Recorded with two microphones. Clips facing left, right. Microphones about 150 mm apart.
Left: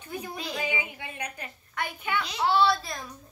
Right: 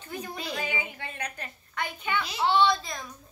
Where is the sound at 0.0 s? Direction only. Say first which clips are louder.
Left 1 dB; 10° left (ahead or behind).